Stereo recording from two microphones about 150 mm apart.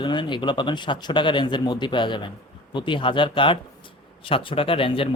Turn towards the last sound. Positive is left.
turn(degrees=35)  # may be behind; listen again after turning